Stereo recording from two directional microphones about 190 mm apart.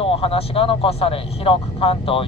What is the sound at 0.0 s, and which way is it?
Speech, 30° left (ahead or behind).